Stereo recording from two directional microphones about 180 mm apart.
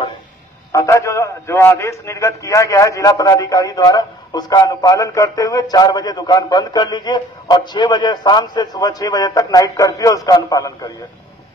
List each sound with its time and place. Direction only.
0.7 s a man's voice: 15° left (ahead or behind)